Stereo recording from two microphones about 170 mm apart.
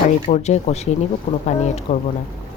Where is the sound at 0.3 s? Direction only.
40° left (ahead or behind).